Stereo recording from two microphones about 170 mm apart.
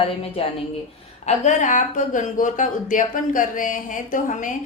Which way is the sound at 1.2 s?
45° left (ahead or behind).